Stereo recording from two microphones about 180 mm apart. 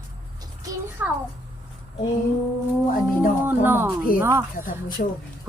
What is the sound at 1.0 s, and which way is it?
Speech, 10° right (ahead or behind).